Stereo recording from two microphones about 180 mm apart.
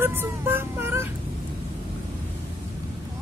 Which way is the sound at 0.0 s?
10° right (ahead or behind).